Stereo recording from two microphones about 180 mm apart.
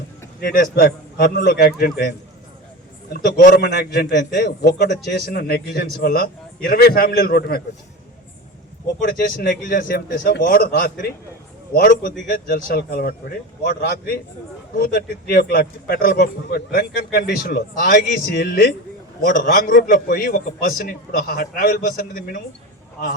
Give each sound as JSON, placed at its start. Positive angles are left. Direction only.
{"t": 0.4, "sound": "speech", "side_deg": 55}
{"t": 3.1, "sound": "speech", "side_deg": 50}
{"t": 9.0, "sound": "a man's voice", "side_deg": 55}